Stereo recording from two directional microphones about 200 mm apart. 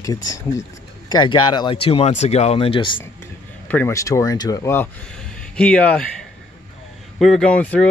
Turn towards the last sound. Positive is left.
turn(degrees=5)  # may be behind; listen again after turning